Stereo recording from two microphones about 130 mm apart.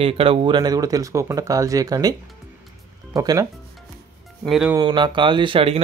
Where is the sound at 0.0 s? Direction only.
45° right (ahead or behind); by 2.1 s 30° right (ahead or behind).